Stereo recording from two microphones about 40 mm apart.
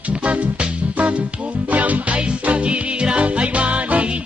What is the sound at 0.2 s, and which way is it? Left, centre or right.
Music, right.